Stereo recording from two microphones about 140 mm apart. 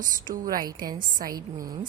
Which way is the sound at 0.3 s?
90° right.